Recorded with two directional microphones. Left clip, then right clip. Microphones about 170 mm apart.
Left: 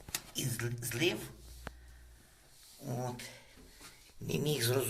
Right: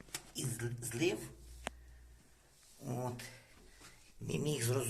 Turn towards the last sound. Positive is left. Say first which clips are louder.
# left 4 dB
turn(degrees=-20)  # may be behind; listen again after turning